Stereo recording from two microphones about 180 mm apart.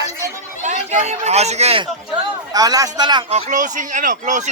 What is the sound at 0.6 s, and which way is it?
Speech, 40° right (ahead or behind).